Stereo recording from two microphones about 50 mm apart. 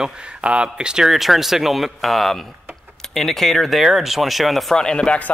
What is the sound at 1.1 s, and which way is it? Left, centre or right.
Speech, centre.